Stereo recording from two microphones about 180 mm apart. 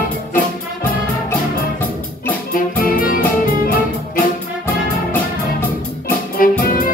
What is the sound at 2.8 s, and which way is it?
Music, 50° left (ahead or behind).